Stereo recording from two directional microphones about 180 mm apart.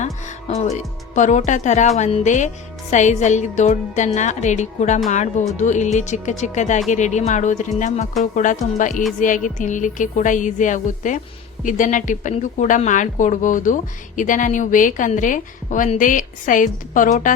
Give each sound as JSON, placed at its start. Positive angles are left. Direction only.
{"t": 0.0, "sound": "a woman's voice", "side_deg": 40}